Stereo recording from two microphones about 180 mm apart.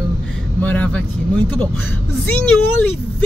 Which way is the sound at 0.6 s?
10° left (ahead or behind).